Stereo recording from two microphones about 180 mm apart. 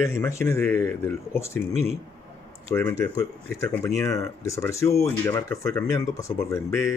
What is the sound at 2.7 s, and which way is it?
Speech, 15° left (ahead or behind).